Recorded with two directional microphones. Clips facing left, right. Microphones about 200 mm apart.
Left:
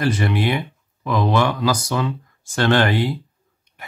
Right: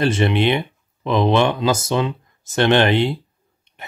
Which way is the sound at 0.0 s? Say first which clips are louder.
Right 3 dB; 25° right (ahead or behind).